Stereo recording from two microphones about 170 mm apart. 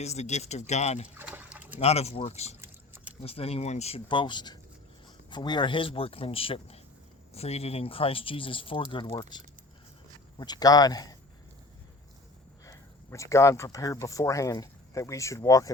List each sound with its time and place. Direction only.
0.0 s speech: 40° left (ahead or behind)
1.1 s a sound: 10° right (ahead or behind)
1.8 s speech: 40° left (ahead or behind)
2.6 s vehicle: 10° right (ahead or behind)
3.2 s speech: 35° left (ahead or behind)
12.6 s speech: 20° left (ahead or behind)